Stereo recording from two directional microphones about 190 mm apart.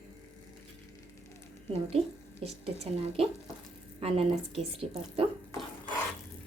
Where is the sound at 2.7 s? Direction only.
35° right (ahead or behind).